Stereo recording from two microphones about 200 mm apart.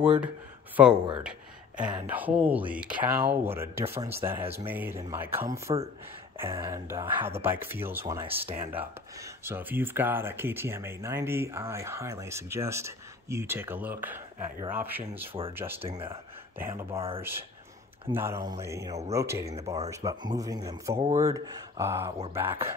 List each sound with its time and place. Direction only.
0.0 s speech: 5° right (ahead or behind)
2.0 s speech: 10° right (ahead or behind)
5.7 s speech: 25° right (ahead or behind)
6.3 s speech: 15° right (ahead or behind)
15.8 s speech: 30° right (ahead or behind)
16.5 s speech: 10° right (ahead or behind)
21.0 s speech: 35° right (ahead or behind)
21.3 s speech: 15° right (ahead or behind)